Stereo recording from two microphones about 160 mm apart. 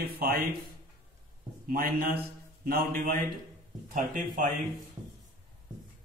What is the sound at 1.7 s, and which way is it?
A man's voice, 65° right (ahead or behind).